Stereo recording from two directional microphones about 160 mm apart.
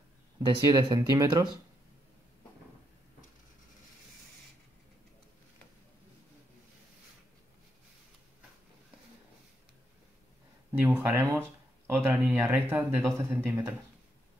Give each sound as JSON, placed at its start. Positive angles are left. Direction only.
{"t": 0.4, "sound": "speech", "side_deg": -30}
{"t": 10.7, "sound": "speech", "side_deg": -10}